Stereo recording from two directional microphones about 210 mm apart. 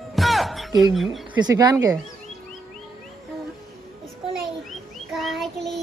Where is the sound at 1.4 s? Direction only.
15° right (ahead or behind).